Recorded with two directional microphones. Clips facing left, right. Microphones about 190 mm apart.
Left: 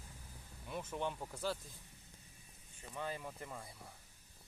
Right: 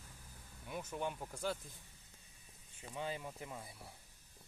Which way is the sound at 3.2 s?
5° right (ahead or behind).